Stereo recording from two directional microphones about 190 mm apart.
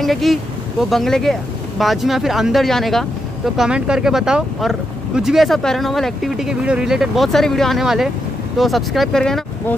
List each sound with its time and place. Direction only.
0.0 s speech: centre (ahead or behind)